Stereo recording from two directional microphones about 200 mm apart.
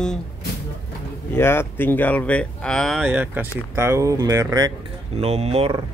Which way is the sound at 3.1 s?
10° right (ahead or behind).